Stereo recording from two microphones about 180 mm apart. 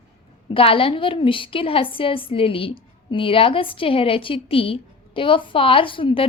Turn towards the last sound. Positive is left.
turn(degrees=30)  # may be behind; listen again after turning